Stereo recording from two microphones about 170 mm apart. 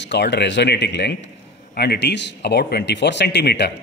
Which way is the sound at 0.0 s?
90° left.